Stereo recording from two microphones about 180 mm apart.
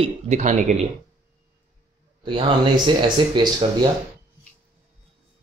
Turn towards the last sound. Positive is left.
turn(degrees=-25)  # may be behind; listen again after turning